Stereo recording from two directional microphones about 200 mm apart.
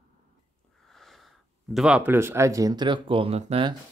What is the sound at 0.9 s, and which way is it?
Speech, centre (ahead or behind).